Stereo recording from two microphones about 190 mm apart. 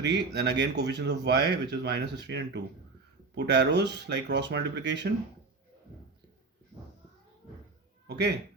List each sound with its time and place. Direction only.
0.0 s speech: 65° right (ahead or behind)
8.0 s speech: 60° right (ahead or behind)